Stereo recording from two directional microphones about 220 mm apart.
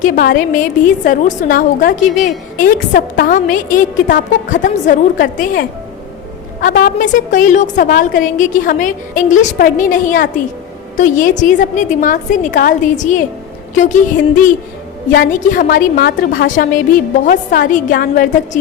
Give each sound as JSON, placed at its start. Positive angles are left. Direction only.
{"t": 0.0, "sound": "a woman's voice", "side_deg": 40}
{"t": 15.1, "sound": "a woman's voice", "side_deg": 40}